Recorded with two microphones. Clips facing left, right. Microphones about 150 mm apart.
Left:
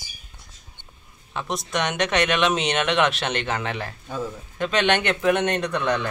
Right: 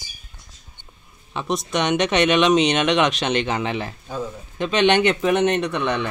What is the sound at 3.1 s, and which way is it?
Speech, 15° right (ahead or behind).